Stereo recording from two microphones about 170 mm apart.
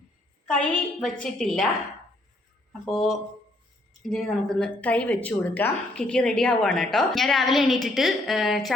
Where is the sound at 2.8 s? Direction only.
Centre (ahead or behind).